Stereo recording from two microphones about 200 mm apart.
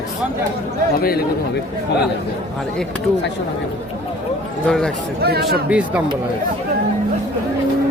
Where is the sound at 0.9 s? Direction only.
50° left (ahead or behind).